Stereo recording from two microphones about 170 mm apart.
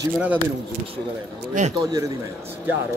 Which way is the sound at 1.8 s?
20° right (ahead or behind).